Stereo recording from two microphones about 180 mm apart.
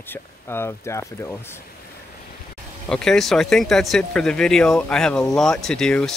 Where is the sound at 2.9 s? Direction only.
5° left (ahead or behind).